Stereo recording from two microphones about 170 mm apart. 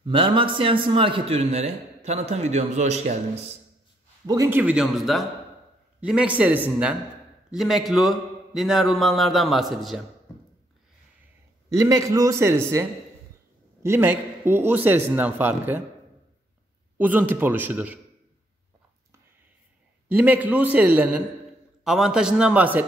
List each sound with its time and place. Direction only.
0.0 s a man's voice: 30° right (ahead or behind)
4.3 s a man's voice: 15° right (ahead or behind)
11.7 s a man's voice: 20° right (ahead or behind)
13.8 s a man's voice: 15° right (ahead or behind)
17.0 s a man's voice: 10° right (ahead or behind)
20.1 s a man's voice: 10° right (ahead or behind)